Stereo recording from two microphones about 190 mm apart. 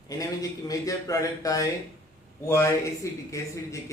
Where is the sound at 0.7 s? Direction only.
15° left (ahead or behind).